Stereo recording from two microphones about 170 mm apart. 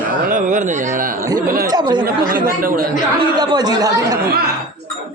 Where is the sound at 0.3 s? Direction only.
50° right (ahead or behind).